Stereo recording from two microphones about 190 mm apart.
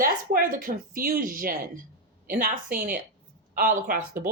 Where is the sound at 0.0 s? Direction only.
50° right (ahead or behind).